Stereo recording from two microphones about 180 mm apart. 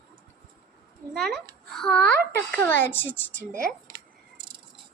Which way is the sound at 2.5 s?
10° left (ahead or behind).